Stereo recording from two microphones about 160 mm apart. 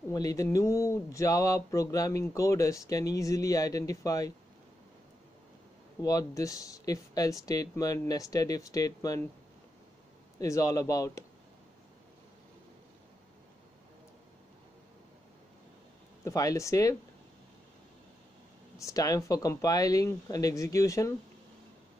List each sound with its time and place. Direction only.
0.1 s speech: 20° left (ahead or behind)
6.0 s speech: 20° left (ahead or behind)
10.4 s speech: 20° left (ahead or behind)
16.3 s speech: 20° left (ahead or behind)
18.8 s speech: 20° left (ahead or behind)